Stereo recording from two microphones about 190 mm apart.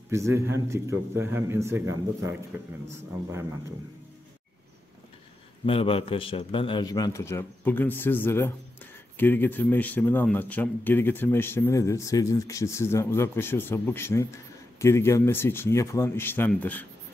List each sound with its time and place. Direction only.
0.1 s a man's voice: 15° right (ahead or behind)
5.7 s a man's voice: 30° left (ahead or behind); by 16.8 s 10° left (ahead or behind)